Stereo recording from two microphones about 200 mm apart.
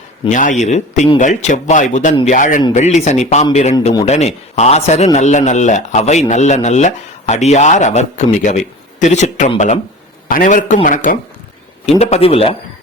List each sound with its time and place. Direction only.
0.3 s a man's voice: 40° left (ahead or behind)